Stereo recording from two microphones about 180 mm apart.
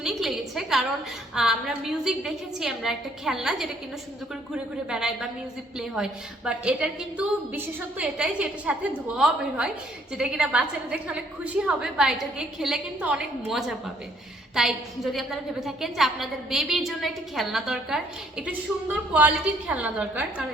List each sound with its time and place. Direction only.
0.0 s a woman's voice: centre (ahead or behind)